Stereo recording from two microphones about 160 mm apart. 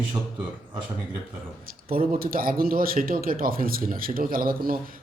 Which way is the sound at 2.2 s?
65° right (ahead or behind).